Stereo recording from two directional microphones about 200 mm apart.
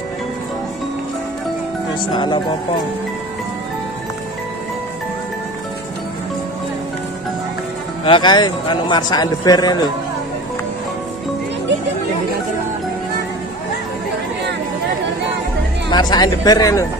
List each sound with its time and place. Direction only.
2.1 s a man's voice: 25° left (ahead or behind)
8.0 s a man's voice: 25° left (ahead or behind)
15.9 s a man's voice: 20° left (ahead or behind)